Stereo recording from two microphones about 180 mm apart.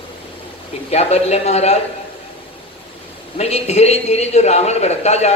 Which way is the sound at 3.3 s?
35° left (ahead or behind).